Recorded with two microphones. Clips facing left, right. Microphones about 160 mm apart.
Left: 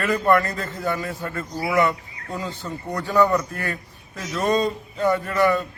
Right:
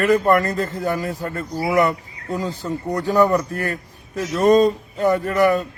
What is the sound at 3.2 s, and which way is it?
A man's voice, 40° right (ahead or behind).